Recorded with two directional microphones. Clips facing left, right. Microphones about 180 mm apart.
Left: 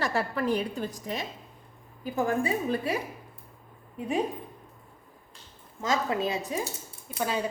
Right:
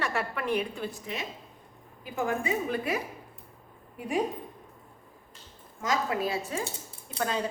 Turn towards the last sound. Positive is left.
turn(degrees=10)  # may be behind; listen again after turning